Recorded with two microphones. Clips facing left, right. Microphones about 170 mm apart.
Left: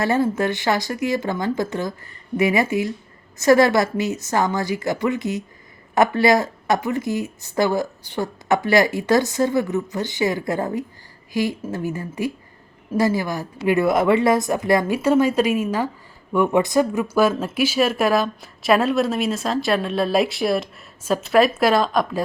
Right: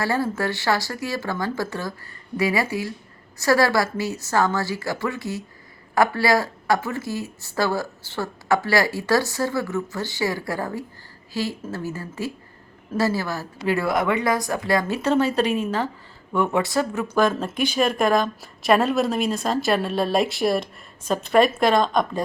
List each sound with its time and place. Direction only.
0.0 s speech: 20° left (ahead or behind); by 22.2 s 5° left (ahead or behind)